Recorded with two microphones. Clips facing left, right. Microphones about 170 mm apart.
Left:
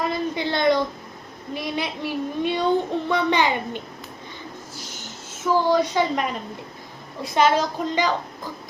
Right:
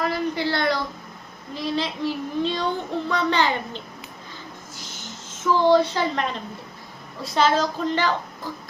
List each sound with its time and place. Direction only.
0.0 s a sound: 20° left (ahead or behind)
1.5 s child singing: 15° left (ahead or behind)
5.5 s child singing: 10° left (ahead or behind)
7.3 s child singing: 10° left (ahead or behind)